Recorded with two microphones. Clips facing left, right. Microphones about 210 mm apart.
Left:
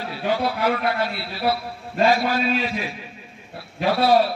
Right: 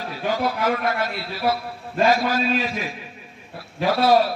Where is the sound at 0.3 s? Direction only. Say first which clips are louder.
Left 1 dB; 45° right (ahead or behind).